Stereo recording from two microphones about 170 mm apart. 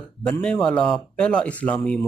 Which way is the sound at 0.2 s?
5° left (ahead or behind).